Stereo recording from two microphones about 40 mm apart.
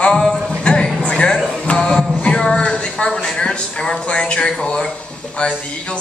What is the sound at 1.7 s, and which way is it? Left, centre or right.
Music, left.